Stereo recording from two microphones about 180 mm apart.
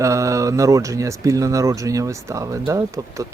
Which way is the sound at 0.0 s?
15° right (ahead or behind).